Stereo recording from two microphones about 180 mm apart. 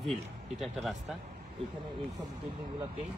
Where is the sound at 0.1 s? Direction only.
Centre (ahead or behind).